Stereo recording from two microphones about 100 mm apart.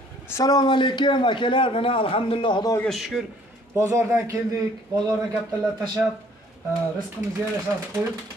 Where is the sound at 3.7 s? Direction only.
30° right (ahead or behind).